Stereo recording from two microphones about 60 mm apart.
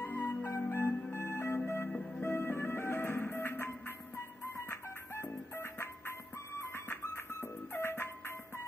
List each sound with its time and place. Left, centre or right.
0.0 s music: left